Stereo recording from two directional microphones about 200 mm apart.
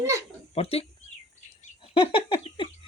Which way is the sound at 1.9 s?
25° left (ahead or behind).